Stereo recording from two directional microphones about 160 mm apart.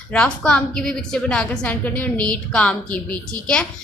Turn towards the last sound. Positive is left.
turn(degrees=5)  # may be behind; listen again after turning